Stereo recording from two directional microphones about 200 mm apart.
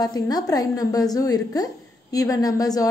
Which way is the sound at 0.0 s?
20° left (ahead or behind).